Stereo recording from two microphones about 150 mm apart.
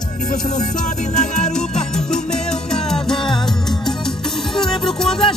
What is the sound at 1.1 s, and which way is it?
Music, 50° left (ahead or behind).